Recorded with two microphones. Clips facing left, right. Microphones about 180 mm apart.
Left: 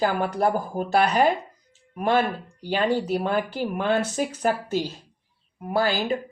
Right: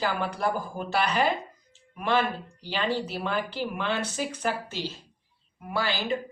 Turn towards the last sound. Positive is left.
turn(degrees=45)  # may be behind; listen again after turning